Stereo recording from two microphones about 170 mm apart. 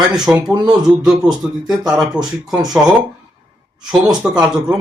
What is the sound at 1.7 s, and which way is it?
Speech, 5° right (ahead or behind).